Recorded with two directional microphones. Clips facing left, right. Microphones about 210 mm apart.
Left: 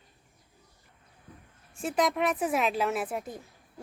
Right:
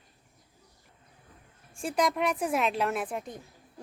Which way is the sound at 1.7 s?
Centre (ahead or behind).